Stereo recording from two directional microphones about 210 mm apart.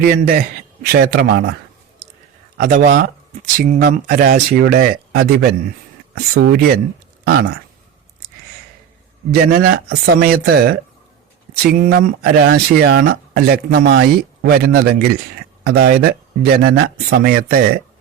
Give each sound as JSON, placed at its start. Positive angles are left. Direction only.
{"t": 0.0, "sound": "speech", "side_deg": -45}
{"t": 2.6, "sound": "speech", "side_deg": -40}
{"t": 9.4, "sound": "speech", "side_deg": -45}